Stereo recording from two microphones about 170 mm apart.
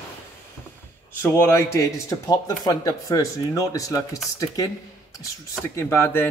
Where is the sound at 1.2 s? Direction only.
15° left (ahead or behind).